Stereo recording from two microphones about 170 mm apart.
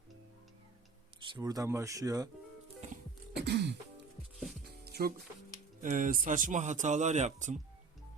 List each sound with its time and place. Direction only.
1.2 s speech: 25° right (ahead or behind)
3.4 s throat clearing: 80° right
4.7 s music: 65° right (ahead or behind)
5.8 s speech: 50° right (ahead or behind)